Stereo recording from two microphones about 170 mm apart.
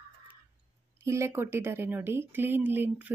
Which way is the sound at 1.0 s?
15° right (ahead or behind).